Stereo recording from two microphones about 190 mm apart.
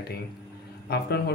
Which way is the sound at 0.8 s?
55° left (ahead or behind).